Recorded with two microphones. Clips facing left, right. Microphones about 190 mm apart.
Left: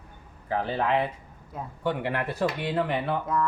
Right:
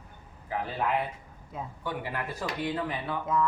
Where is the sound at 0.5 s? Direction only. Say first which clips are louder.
Left 4 dB; 75° left (ahead or behind).